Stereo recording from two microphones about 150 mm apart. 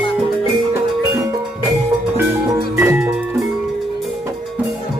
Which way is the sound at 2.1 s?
15° right (ahead or behind).